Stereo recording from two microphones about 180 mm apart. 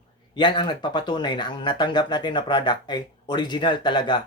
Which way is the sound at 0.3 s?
25° left (ahead or behind).